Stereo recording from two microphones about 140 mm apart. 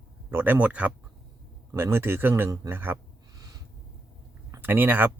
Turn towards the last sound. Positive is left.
turn(degrees=-15)  # may be behind; listen again after turning